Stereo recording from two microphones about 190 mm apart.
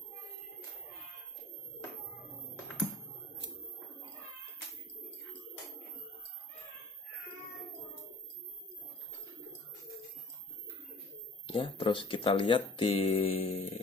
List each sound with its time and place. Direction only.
11.5 s speech: 25° left (ahead or behind)